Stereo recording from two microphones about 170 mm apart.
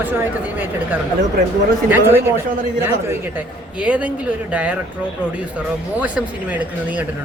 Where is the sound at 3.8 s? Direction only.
10° right (ahead or behind).